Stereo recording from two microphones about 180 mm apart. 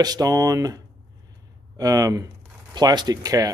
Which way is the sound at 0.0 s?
20° right (ahead or behind).